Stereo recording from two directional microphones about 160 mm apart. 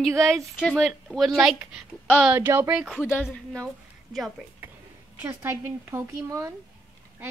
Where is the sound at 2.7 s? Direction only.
5° right (ahead or behind).